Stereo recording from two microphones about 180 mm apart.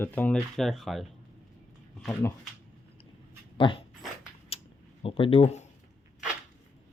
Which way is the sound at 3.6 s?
30° left (ahead or behind).